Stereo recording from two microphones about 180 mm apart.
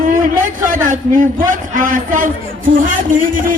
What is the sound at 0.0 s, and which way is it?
A man's voice, 50° right (ahead or behind).